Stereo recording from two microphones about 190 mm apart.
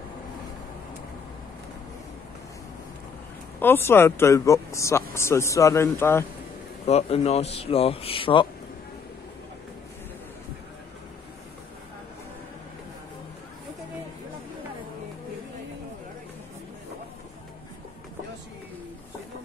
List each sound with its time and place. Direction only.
3.5 s speech: 10° left (ahead or behind)
6.9 s a man's voice: 35° left (ahead or behind)